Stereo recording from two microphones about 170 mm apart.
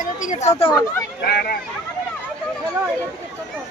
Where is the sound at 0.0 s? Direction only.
50° left (ahead or behind).